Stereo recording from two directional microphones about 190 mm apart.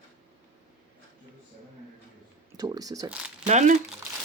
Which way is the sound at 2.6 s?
20° right (ahead or behind).